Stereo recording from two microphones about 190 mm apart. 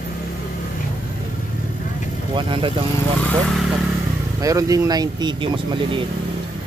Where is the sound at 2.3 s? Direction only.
25° right (ahead or behind).